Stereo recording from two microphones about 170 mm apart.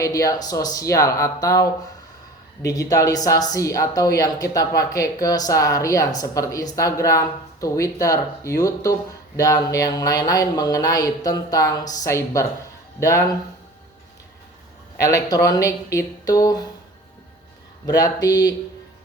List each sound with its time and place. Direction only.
0.0 s speech: 20° left (ahead or behind)
14.9 s speech: 20° left (ahead or behind)
17.8 s speech: 20° left (ahead or behind)